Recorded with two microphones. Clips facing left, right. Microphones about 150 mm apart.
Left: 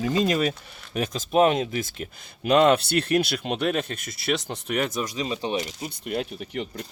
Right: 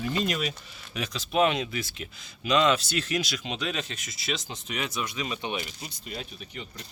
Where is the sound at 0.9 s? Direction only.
45° left (ahead or behind).